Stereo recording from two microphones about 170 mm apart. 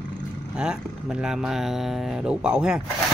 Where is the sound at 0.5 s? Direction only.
5° right (ahead or behind).